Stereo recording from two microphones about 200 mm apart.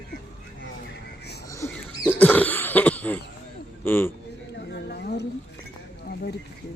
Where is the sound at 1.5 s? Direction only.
15° left (ahead or behind).